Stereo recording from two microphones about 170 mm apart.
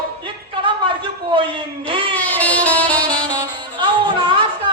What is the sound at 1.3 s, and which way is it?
Speech, 30° right (ahead or behind).